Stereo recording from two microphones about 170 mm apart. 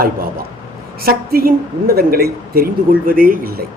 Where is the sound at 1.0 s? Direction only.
60° right (ahead or behind).